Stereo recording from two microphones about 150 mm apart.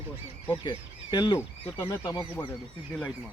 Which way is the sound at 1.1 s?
30° left (ahead or behind).